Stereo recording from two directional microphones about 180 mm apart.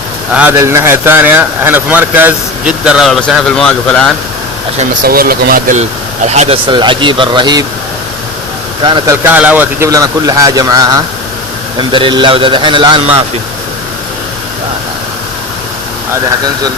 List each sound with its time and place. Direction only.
0.3 s a man's voice: 10° right (ahead or behind); by 4.1 s 5° left (ahead or behind)
5.0 s speech: 55° right (ahead or behind)
6.2 s speech: 40° right (ahead or behind)
6.7 s a man's voice: 25° right (ahead or behind)
8.8 s a man's voice: 25° right (ahead or behind)
9.2 s a man's voice: 10° right (ahead or behind); by 13.0 s 25° right (ahead or behind)